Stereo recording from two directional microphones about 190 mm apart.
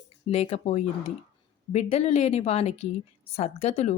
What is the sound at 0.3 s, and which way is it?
A woman's voice, 30° left (ahead or behind).